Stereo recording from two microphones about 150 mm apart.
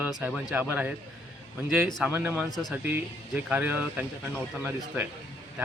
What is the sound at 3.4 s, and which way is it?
Speech, 15° right (ahead or behind).